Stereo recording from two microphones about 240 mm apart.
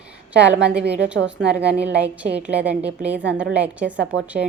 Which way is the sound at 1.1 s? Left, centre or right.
Right.